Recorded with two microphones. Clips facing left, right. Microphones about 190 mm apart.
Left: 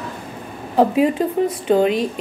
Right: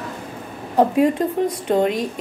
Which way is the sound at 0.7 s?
5° left (ahead or behind).